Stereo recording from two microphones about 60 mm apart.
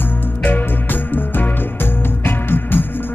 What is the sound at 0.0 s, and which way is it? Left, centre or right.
Music, left.